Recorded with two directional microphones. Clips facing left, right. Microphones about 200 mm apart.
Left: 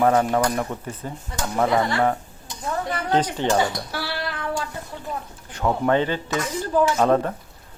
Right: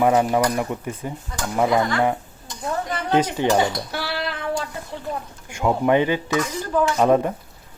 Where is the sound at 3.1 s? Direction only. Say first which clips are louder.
Right 3 dB; 10° right (ahead or behind).